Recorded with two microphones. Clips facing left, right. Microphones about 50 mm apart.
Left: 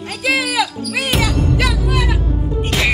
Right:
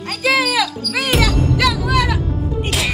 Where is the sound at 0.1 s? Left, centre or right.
Centre.